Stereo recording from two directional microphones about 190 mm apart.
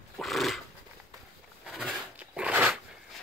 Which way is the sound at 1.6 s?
5° right (ahead or behind).